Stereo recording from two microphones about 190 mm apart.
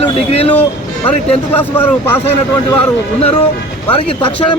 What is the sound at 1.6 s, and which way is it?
Speech, 10° left (ahead or behind).